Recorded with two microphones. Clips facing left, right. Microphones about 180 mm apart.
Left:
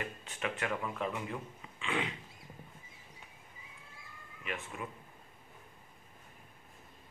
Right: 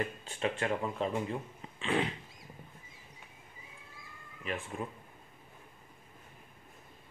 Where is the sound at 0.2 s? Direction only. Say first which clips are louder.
Right 4 dB; 30° right (ahead or behind).